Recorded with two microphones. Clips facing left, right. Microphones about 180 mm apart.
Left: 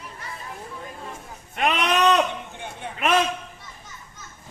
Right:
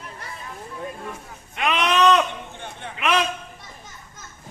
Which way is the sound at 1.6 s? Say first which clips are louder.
Right 1 dB; 40° left (ahead or behind).